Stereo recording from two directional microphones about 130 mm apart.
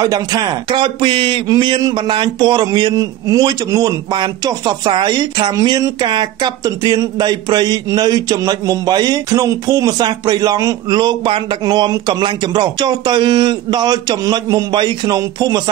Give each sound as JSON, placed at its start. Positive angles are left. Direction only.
{"t": 0.0, "sound": "speech", "side_deg": -30}